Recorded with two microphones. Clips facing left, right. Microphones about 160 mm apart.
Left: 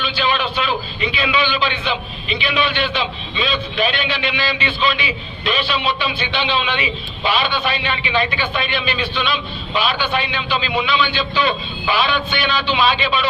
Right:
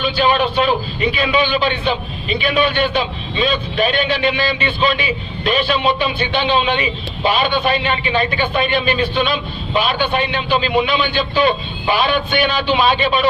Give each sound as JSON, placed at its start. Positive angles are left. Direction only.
{"t": 0.0, "sound": "a man's voice", "side_deg": -45}